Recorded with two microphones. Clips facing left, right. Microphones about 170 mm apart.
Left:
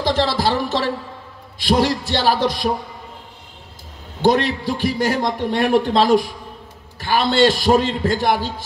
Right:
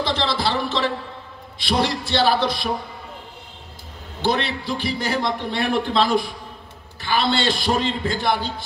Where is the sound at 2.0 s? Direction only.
45° left (ahead or behind).